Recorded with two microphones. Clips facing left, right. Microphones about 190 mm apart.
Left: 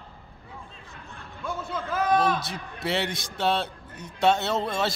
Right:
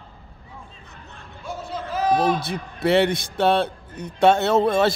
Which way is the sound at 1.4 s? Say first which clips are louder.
Right 1 dB; 55° left (ahead or behind).